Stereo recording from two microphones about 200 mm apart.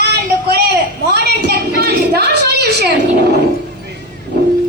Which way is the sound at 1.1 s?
55° right (ahead or behind).